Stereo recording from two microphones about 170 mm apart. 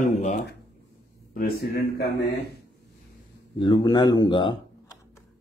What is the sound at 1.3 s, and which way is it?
Speech, 65° left (ahead or behind).